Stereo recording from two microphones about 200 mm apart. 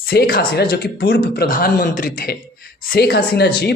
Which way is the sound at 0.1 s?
50° left (ahead or behind).